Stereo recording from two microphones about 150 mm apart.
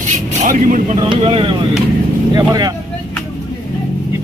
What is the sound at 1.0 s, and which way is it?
Speech, 35° right (ahead or behind).